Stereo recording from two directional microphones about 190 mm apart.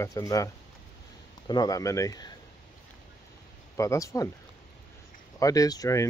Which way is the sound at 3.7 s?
15° left (ahead or behind).